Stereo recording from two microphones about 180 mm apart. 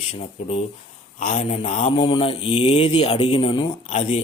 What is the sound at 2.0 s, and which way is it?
Speech, 30° left (ahead or behind).